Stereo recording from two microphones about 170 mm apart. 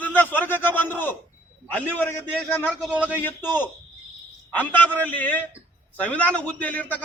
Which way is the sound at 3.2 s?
10° left (ahead or behind).